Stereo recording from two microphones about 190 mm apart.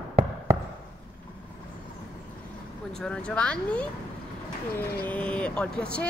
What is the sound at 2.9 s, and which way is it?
Speech, 5° left (ahead or behind).